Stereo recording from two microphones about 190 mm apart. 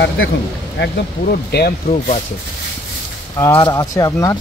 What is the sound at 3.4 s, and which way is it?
Speech, 15° left (ahead or behind).